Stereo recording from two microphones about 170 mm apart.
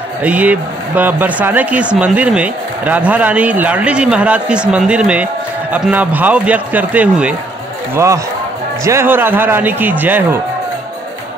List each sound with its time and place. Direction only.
0.2 s speech: 10° right (ahead or behind)